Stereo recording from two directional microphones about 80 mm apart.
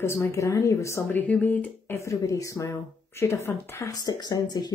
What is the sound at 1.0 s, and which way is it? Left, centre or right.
Speech, centre.